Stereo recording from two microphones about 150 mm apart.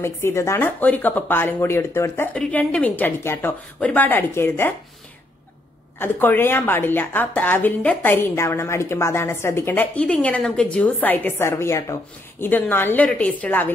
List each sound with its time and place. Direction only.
0.0 s a woman's voice: 15° left (ahead or behind)
5.9 s a woman's voice: 15° left (ahead or behind)